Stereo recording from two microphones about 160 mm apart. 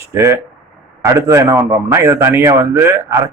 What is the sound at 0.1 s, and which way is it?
A man's voice, 20° right (ahead or behind).